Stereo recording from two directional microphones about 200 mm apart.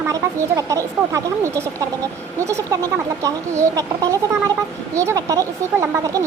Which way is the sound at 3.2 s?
15° right (ahead or behind).